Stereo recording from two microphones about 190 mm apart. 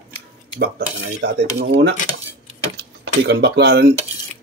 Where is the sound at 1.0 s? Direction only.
65° right (ahead or behind).